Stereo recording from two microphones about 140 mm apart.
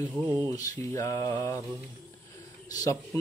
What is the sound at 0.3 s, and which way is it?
Speech, 20° left (ahead or behind).